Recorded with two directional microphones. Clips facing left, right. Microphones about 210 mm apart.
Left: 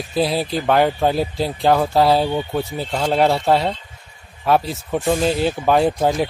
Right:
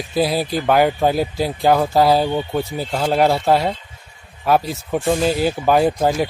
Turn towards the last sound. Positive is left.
turn(degrees=0)  # may be behind; listen again after turning